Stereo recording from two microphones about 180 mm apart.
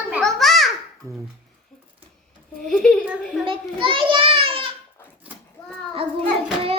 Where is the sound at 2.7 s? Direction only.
5° left (ahead or behind).